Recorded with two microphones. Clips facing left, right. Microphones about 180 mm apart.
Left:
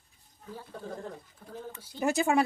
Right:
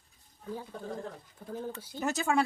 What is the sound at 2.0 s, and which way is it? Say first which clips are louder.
Speech: left 3 dB; 15° left (ahead or behind).